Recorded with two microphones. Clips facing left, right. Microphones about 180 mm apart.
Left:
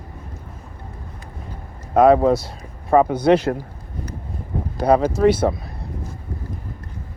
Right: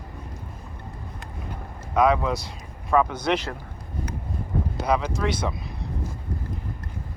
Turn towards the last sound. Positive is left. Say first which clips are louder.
# left 10 dB
turn(degrees=50)  # may be behind; listen again after turning